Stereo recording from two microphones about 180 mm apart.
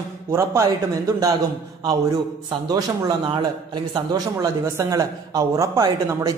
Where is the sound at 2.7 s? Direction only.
25° right (ahead or behind).